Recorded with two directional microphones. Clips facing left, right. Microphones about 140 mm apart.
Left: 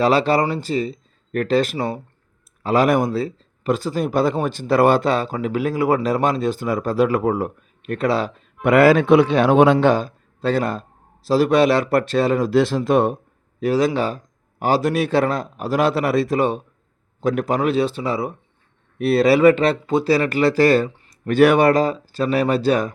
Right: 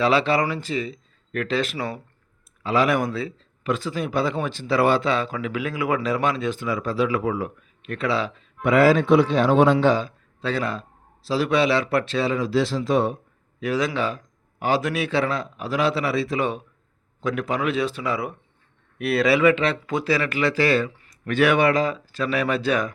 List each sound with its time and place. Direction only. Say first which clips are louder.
0.0 s speech: left 3 dB; 40° left (ahead or behind)
8.6 s a man's voice: left 4 dB; 65° left (ahead or behind)
9.7 s speech: left 3 dB; 50° left (ahead or behind)
13.6 s speech: left 5 dB; 35° left (ahead or behind)